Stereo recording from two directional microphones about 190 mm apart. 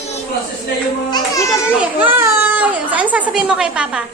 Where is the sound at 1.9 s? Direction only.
10° right (ahead or behind).